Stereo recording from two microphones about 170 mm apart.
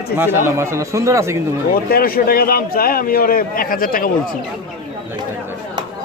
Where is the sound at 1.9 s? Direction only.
60° left (ahead or behind).